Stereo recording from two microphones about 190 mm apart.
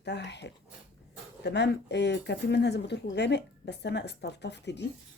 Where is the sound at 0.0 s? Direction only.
65° left (ahead or behind).